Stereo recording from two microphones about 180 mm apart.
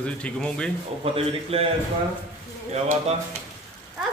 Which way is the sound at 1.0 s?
35° right (ahead or behind).